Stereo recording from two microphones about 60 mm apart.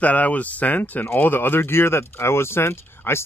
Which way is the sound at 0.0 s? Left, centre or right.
Left.